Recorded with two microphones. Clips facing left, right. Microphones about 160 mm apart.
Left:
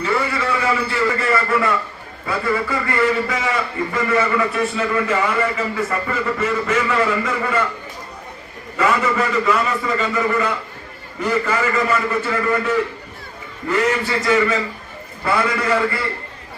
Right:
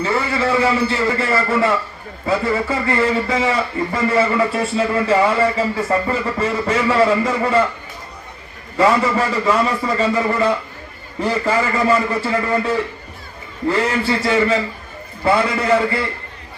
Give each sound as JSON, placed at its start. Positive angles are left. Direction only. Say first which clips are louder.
{"t": 0.0, "sound": "a man's voice", "louder": "right 2 dB", "side_deg": -30}
{"t": 8.8, "sound": "a man's voice", "louder": "right 3 dB", "side_deg": -35}